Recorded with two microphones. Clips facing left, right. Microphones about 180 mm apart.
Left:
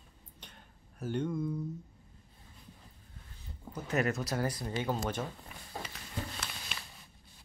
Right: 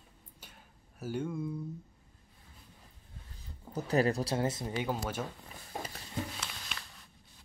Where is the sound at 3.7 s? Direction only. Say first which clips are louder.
Right 3 dB; 35° right (ahead or behind).